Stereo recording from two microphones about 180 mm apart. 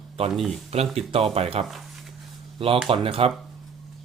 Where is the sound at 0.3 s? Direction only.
Centre (ahead or behind).